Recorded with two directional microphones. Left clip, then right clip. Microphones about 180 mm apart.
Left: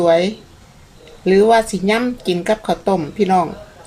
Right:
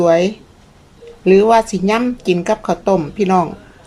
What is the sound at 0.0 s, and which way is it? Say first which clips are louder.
A woman's voice: right 1 dB; 10° right (ahead or behind).